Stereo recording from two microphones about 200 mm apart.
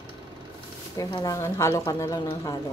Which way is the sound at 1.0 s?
20° left (ahead or behind).